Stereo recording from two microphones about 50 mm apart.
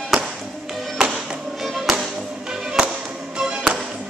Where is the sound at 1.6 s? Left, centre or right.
Centre.